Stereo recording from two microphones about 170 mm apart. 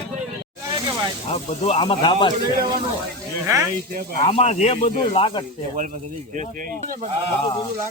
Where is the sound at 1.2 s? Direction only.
35° left (ahead or behind).